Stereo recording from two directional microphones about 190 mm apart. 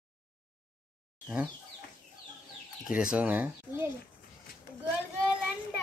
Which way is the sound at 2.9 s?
5° right (ahead or behind).